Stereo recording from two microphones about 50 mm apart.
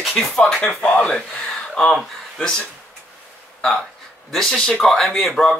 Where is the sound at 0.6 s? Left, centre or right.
Left.